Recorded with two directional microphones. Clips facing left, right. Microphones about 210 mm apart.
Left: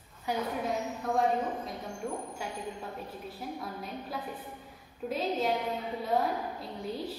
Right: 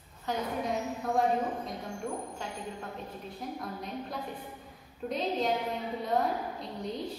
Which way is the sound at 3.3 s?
5° left (ahead or behind).